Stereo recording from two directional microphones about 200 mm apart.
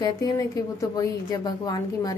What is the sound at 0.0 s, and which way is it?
A woman's voice, 20° left (ahead or behind).